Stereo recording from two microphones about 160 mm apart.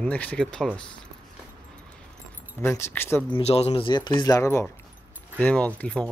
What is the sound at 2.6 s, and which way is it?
Speech, 15° left (ahead or behind).